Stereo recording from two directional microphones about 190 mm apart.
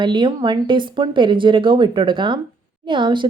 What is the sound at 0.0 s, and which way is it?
Speech, 25° right (ahead or behind).